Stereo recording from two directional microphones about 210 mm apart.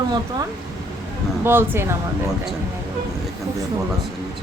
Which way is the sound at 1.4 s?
10° right (ahead or behind).